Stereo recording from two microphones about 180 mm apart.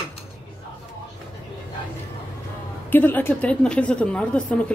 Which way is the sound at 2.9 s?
10° left (ahead or behind).